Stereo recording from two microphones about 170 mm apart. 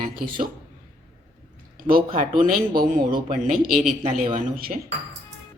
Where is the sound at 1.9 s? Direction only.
60° right (ahead or behind).